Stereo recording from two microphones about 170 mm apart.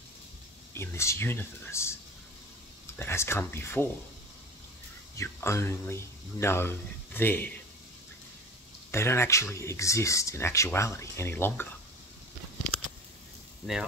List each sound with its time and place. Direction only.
0.7 s speech: 15° left (ahead or behind)
5.1 s speech: 15° left (ahead or behind)
8.9 s speech: 15° left (ahead or behind)